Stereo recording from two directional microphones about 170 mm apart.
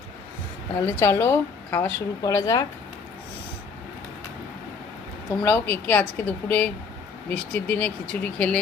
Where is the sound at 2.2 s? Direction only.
20° left (ahead or behind).